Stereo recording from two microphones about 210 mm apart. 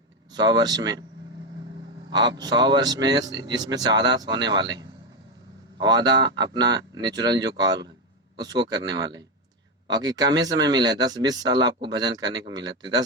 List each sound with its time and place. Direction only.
0.3 s a man's voice: 20° right (ahead or behind)
2.0 s a man's voice: 20° right (ahead or behind)
8.6 s a man's voice: 20° right (ahead or behind)